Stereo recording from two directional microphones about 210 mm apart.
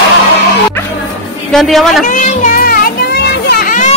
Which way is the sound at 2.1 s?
35° left (ahead or behind).